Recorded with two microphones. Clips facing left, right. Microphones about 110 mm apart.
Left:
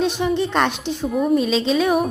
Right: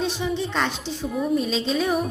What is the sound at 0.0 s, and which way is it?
Speech, 65° left (ahead or behind).